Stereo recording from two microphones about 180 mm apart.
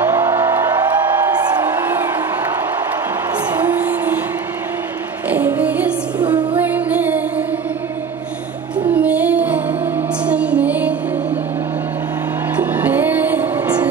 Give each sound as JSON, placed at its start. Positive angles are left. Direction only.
{"t": 0.1, "sound": "music", "side_deg": -15}
{"t": 5.3, "sound": "music", "side_deg": -10}
{"t": 6.2, "sound": "music", "side_deg": -25}
{"t": 6.6, "sound": "music", "side_deg": -10}
{"t": 8.9, "sound": "music", "side_deg": -10}
{"t": 12.5, "sound": "music", "side_deg": -10}